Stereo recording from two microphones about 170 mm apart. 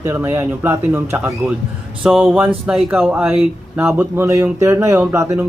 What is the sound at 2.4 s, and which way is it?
Speech, 10° right (ahead or behind).